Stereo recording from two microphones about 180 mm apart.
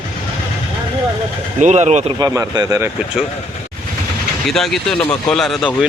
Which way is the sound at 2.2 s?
20° right (ahead or behind).